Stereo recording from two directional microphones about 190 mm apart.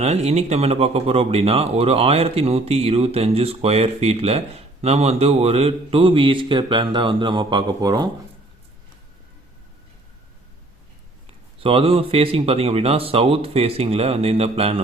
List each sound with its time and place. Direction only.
0.0 s speech: 35° right (ahead or behind)
11.6 s speech: 30° right (ahead or behind)